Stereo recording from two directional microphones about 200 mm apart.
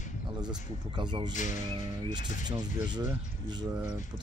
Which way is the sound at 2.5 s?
20° right (ahead or behind).